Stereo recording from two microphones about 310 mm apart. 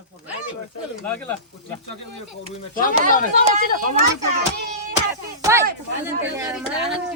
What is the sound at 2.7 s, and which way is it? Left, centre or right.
Speech, left.